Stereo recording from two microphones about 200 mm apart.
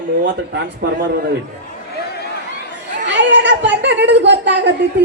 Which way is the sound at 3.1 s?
65° right (ahead or behind).